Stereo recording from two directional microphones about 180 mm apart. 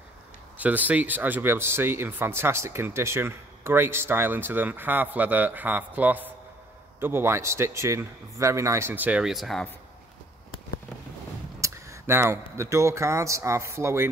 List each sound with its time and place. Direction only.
0.6 s speech: 10° right (ahead or behind)
11.6 s speech: 15° right (ahead or behind)